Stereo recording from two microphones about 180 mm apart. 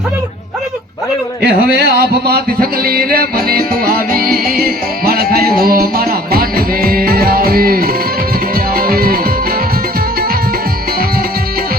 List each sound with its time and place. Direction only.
1.4 s music: 60° right (ahead or behind)